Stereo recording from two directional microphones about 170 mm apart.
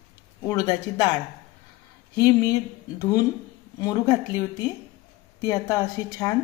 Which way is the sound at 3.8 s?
20° left (ahead or behind).